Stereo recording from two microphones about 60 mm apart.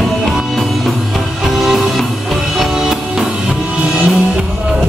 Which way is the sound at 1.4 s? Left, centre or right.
Centre.